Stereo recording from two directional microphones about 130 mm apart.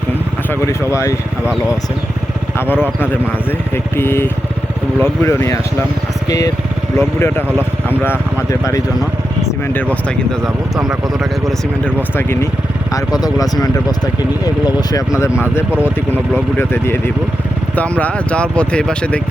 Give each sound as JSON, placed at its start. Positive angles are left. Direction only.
{"t": 0.7, "sound": "speech", "side_deg": 20}
{"t": 3.9, "sound": "speech", "side_deg": 20}
{"t": 8.4, "sound": "speech", "side_deg": 25}
{"t": 10.4, "sound": "speech", "side_deg": -5}
{"t": 12.1, "sound": "speech", "side_deg": 20}
{"t": 13.1, "sound": "speech", "side_deg": 30}
{"t": 16.3, "sound": "speech", "side_deg": 15}